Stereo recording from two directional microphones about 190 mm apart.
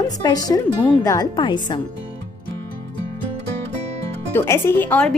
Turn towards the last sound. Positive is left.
turn(degrees=10)  # may be behind; listen again after turning